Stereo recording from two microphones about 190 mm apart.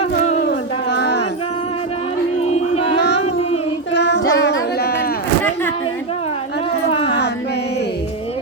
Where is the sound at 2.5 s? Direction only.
35° left (ahead or behind).